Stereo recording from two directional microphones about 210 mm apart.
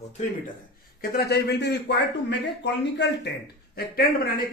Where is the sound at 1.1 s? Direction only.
50° left (ahead or behind).